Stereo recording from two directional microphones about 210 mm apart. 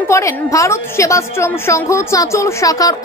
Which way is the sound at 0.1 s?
15° left (ahead or behind).